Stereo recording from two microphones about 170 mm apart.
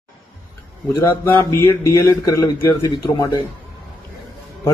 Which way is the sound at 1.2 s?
15° left (ahead or behind).